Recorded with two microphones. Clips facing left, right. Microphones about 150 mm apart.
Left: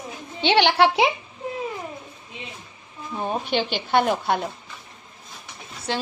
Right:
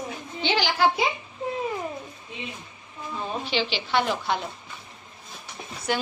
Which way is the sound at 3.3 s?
50° left (ahead or behind).